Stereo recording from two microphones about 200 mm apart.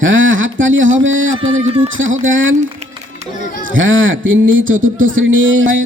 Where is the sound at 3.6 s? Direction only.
75° right (ahead or behind).